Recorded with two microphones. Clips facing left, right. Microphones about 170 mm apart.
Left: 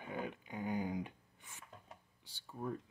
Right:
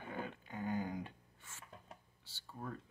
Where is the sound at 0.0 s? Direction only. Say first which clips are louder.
Left 2 dB; 15° left (ahead or behind).